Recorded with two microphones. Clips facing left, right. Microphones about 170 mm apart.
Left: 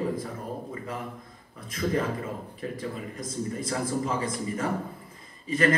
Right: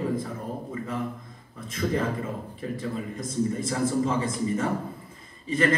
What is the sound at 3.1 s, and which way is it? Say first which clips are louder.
A man's voice: right 5 dB; 25° right (ahead or behind).